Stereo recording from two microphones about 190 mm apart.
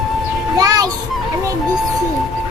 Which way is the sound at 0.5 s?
20° right (ahead or behind).